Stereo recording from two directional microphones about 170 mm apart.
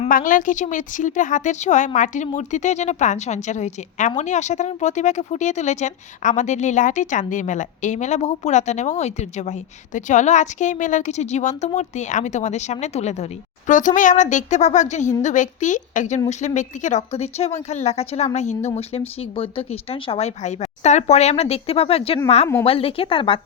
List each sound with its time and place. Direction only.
0.1 s speech: 50° left (ahead or behind); by 23.4 s 30° left (ahead or behind)